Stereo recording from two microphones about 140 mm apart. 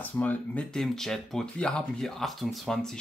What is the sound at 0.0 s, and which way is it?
Speech, 10° left (ahead or behind).